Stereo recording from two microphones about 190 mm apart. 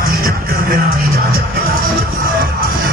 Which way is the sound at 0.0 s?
50° right (ahead or behind).